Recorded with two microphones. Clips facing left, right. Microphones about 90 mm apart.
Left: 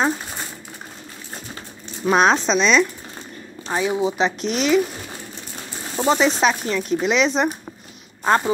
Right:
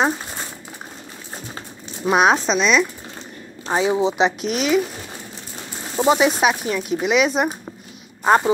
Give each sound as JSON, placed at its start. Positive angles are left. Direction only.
{"t": 2.0, "sound": "speech", "side_deg": -10}
{"t": 3.6, "sound": "speech", "side_deg": -25}
{"t": 4.4, "sound": "speech", "side_deg": -5}
{"t": 5.9, "sound": "speech", "side_deg": -10}